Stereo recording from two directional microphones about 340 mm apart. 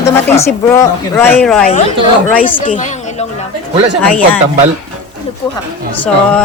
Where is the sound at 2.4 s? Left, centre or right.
Left.